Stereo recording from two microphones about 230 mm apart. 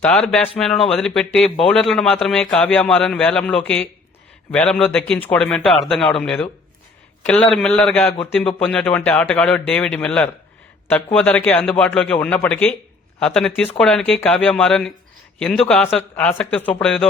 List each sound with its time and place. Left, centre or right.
0.0 s a man's voice: centre